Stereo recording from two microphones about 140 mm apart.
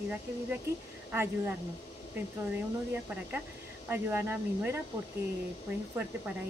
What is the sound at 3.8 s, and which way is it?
Speech, 15° right (ahead or behind).